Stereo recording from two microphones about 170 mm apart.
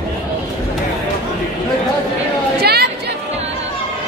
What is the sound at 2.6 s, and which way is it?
Chatter, 70° right (ahead or behind).